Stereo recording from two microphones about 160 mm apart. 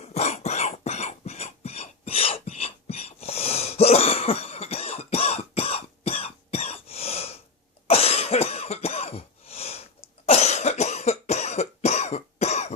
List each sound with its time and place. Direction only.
0.0 s cough: 40° left (ahead or behind)